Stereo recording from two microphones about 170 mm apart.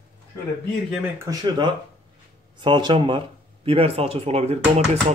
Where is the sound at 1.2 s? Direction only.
25° right (ahead or behind).